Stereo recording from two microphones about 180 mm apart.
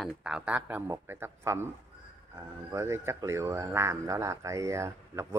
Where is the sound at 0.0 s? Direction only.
5° right (ahead or behind).